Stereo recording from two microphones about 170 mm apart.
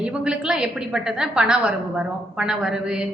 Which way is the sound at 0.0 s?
5° right (ahead or behind).